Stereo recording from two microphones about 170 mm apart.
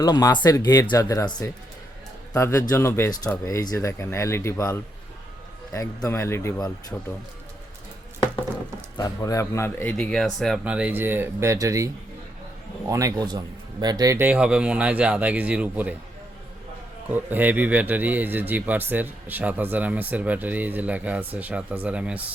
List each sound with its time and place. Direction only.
0.0 s speech: 25° left (ahead or behind); by 7.1 s 5° left (ahead or behind)
9.0 s speech: 20° left (ahead or behind); by 11.9 s 20° right (ahead or behind)
12.9 s a man's voice: 20° right (ahead or behind)
14.3 s speech: 5° right (ahead or behind)
17.1 s speech: 10° right (ahead or behind)